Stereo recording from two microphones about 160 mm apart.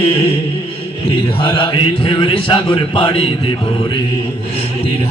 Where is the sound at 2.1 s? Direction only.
30° left (ahead or behind).